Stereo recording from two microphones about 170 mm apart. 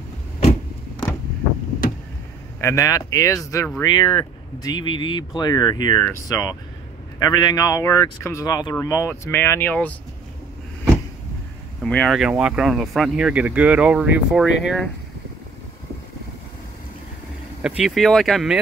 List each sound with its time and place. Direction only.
0.4 s vehicle: 35° left (ahead or behind)
2.6 s speech: 20° left (ahead or behind)
3.8 s speech: 25° left (ahead or behind); by 9.9 s 10° left (ahead or behind)
11.8 s speech: 5° left (ahead or behind)
17.6 s speech: 5° right (ahead or behind)